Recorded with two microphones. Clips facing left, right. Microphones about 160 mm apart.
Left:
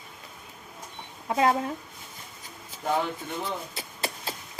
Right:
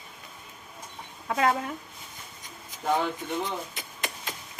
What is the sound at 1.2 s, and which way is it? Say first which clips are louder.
Speech: left 2 dB; 25° left (ahead or behind).